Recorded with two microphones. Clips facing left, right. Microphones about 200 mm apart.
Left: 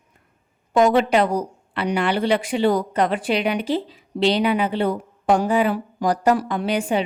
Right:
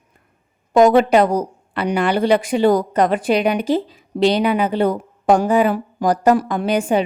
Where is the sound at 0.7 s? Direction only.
45° right (ahead or behind).